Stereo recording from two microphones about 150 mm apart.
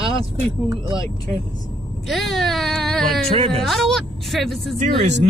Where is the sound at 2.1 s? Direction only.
Centre (ahead or behind).